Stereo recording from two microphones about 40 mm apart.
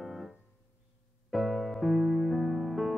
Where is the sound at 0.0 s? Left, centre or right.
Centre.